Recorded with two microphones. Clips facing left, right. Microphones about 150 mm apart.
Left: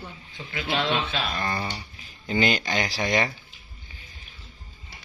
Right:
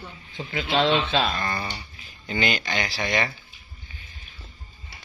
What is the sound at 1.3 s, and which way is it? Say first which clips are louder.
Speech: even; 15° left (ahead or behind).